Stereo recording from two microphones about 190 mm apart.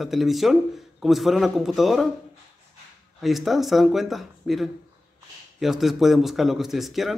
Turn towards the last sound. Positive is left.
turn(degrees=0)  # may be behind; listen again after turning